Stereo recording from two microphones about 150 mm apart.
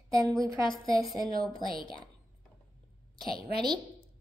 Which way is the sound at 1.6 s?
Centre (ahead or behind).